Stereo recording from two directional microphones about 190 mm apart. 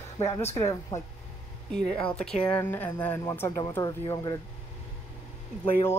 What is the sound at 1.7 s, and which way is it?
Speech, 5° left (ahead or behind).